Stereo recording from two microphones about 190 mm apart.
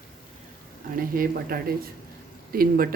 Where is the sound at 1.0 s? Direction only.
50° right (ahead or behind).